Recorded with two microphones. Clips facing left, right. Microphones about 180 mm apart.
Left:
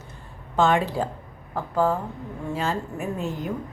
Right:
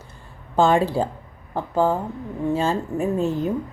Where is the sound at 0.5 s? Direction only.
30° right (ahead or behind).